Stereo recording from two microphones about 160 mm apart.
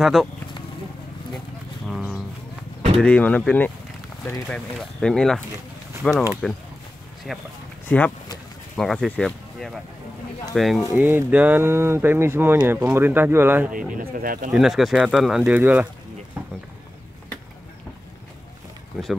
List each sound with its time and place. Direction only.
0.0 s speech: centre (ahead or behind)
1.9 s bird: centre (ahead or behind)
3.0 s speech: 10° left (ahead or behind)
8.7 s speech: centre (ahead or behind)
11.0 s speech: 10° right (ahead or behind)
13.7 s speech: 60° right (ahead or behind)
14.5 s speech: centre (ahead or behind)
16.4 s a sound: 10° right (ahead or behind)